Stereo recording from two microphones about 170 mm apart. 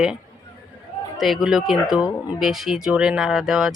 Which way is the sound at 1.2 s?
Centre (ahead or behind).